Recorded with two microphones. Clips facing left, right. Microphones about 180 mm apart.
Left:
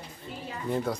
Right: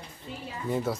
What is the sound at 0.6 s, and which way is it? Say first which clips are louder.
Speech: even; 5° right (ahead or behind).